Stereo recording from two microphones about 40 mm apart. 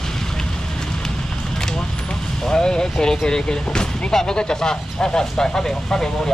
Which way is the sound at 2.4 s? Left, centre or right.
Centre.